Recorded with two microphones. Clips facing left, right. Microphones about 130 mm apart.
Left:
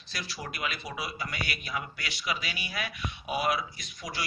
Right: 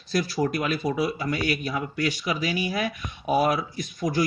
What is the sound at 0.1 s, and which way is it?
A man's voice, 45° right (ahead or behind).